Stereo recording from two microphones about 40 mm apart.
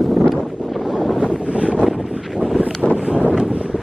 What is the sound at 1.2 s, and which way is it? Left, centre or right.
Wind noise, right.